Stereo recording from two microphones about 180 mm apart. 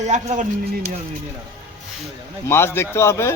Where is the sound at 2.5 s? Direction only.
15° left (ahead or behind).